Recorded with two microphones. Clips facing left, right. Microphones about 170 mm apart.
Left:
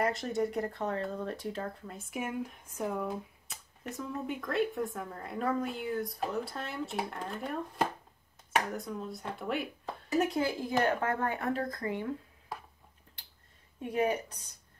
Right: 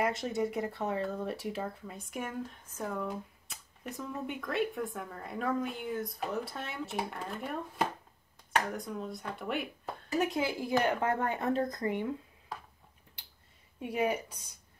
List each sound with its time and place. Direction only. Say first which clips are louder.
0.0 s a woman's voice: left 1 dB; centre (ahead or behind)
2.0 s speech: left 3 dB; 5° left (ahead or behind)
3.9 s a woman's voice: left 2 dB; centre (ahead or behind)
10.8 s speech: left 1 dB; 15° right (ahead or behind)
13.7 s a woman's voice: left 1 dB; 10° right (ahead or behind)